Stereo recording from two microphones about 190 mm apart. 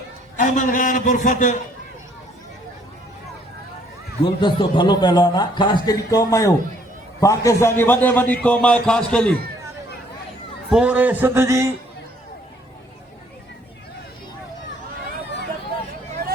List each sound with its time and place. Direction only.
0.3 s a man's voice: 40° left (ahead or behind)
4.2 s a man's voice: 25° left (ahead or behind); by 9.3 s 5° left (ahead or behind)
10.7 s speech: 5° right (ahead or behind)